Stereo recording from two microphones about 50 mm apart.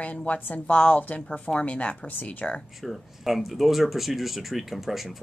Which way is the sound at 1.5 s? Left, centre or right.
Left.